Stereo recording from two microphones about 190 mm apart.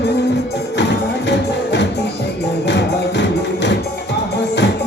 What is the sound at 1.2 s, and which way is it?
Music, 65° left (ahead or behind).